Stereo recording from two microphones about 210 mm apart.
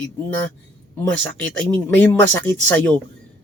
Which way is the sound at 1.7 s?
5° left (ahead or behind).